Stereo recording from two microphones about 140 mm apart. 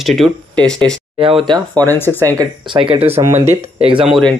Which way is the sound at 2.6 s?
35° right (ahead or behind).